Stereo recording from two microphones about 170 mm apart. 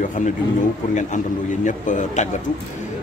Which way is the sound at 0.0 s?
50° left (ahead or behind).